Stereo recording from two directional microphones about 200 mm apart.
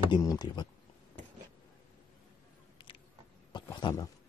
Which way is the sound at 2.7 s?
25° left (ahead or behind).